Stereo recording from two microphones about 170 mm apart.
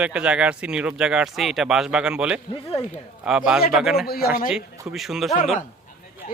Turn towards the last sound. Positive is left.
turn(degrees=60)  # may be behind; listen again after turning